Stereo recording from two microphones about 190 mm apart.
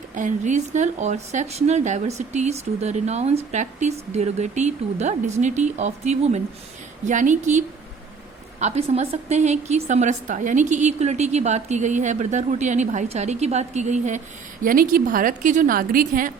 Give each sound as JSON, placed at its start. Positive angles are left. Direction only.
{"t": 0.1, "sound": "a woman's voice", "side_deg": -40}